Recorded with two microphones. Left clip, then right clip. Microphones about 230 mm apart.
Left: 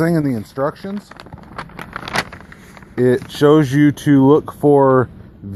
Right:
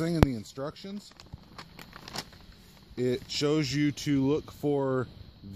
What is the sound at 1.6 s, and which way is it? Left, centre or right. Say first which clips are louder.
Vehicle: left 18 dB; left.